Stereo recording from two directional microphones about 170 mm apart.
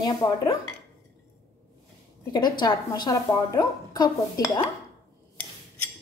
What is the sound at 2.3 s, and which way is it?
A woman's voice, 25° left (ahead or behind).